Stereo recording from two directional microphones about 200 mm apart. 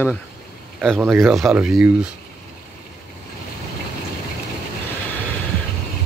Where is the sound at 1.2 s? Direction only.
Centre (ahead or behind).